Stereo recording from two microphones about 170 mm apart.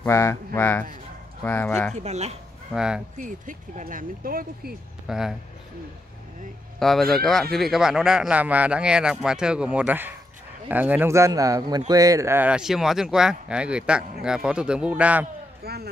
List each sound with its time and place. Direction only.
0.0 s speech: 15° left (ahead or behind)
2.0 s speech: 40° right (ahead or behind)
2.7 s speech: 5° right (ahead or behind)
3.2 s speech: 50° right (ahead or behind)
5.0 s speech: 5° right (ahead or behind)
6.8 s a man's voice: centre (ahead or behind)
15.6 s speech: 65° right (ahead or behind)